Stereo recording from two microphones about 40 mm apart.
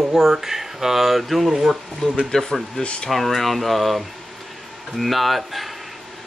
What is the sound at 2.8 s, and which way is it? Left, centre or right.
Speech, left.